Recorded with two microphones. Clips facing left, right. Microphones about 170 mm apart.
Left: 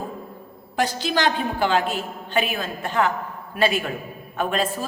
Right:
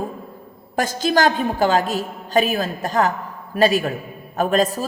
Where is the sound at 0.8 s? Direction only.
45° right (ahead or behind).